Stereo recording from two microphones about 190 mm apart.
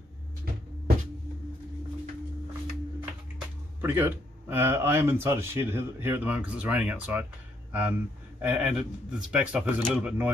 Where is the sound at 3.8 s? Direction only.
10° right (ahead or behind).